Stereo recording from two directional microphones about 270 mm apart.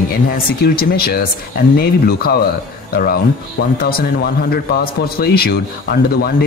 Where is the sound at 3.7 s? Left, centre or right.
Left.